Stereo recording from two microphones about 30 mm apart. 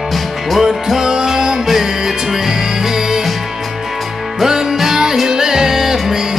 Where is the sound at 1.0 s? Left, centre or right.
Right.